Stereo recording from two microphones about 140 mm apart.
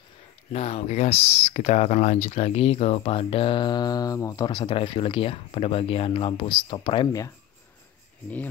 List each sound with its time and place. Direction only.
0.5 s speech: 50° left (ahead or behind)